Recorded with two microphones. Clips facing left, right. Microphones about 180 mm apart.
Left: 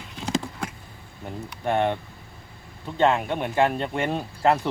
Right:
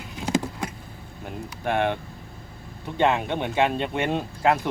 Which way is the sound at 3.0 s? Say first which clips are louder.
Left 1 dB; 15° right (ahead or behind).